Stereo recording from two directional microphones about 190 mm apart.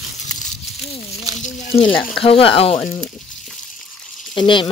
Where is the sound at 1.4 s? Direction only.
35° left (ahead or behind).